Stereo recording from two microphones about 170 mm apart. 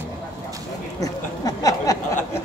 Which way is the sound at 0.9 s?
20° left (ahead or behind).